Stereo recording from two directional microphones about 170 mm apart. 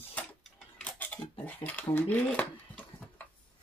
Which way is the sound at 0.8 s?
10° left (ahead or behind).